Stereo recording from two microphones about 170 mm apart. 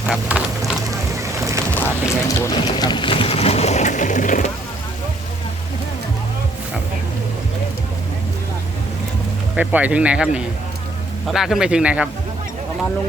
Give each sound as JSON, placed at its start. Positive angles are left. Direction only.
{"t": 0.0, "sound": "a sound", "side_deg": -10}
{"t": 1.7, "sound": "speech", "side_deg": 10}
{"t": 9.6, "sound": "speech", "side_deg": -10}